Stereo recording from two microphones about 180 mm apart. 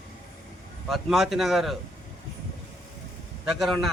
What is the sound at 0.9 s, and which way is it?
Speech, centre (ahead or behind).